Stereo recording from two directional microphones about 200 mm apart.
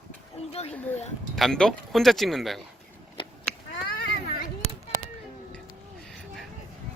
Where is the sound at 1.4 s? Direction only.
Centre (ahead or behind).